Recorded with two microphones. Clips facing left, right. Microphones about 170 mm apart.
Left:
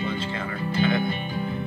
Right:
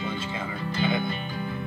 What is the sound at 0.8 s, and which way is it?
Speech, 10° right (ahead or behind).